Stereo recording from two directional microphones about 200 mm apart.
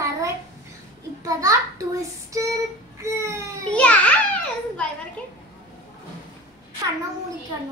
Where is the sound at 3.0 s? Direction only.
15° right (ahead or behind).